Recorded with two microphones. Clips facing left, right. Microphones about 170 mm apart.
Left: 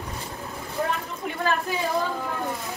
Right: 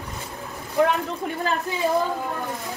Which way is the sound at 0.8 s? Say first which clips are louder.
Right 8 dB; 75° right (ahead or behind).